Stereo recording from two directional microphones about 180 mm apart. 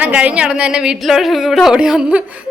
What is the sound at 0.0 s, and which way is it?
Speech, 5° right (ahead or behind).